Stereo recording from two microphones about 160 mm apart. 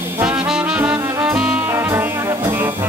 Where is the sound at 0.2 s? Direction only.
10° right (ahead or behind).